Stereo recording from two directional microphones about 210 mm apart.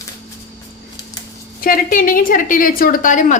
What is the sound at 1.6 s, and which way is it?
A woman's voice, 45° left (ahead or behind).